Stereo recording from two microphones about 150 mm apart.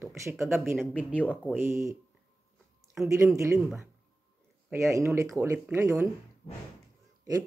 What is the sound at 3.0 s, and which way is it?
Speech, 20° right (ahead or behind).